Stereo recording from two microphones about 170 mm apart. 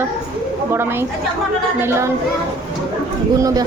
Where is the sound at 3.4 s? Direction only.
20° right (ahead or behind).